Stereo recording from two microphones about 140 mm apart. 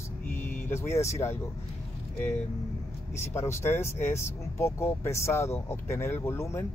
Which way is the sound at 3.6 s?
15° left (ahead or behind).